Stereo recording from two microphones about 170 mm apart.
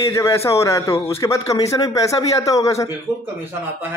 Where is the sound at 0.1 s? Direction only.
15° left (ahead or behind).